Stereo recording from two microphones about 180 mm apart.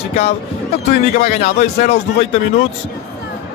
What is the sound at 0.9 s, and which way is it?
A man's voice, 40° left (ahead or behind).